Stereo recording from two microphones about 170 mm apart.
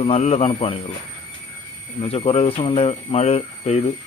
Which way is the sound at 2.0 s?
35° left (ahead or behind).